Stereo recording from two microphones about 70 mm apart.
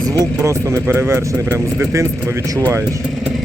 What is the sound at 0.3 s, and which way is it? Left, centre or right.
A man's voice, right.